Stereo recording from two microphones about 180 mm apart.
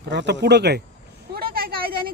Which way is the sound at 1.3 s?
55° right (ahead or behind).